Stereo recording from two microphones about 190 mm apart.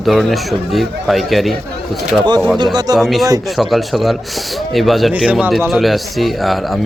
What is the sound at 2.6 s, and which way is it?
Speech, 20° right (ahead or behind).